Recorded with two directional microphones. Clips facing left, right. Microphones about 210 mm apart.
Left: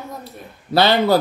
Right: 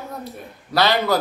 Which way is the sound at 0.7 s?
30° left (ahead or behind).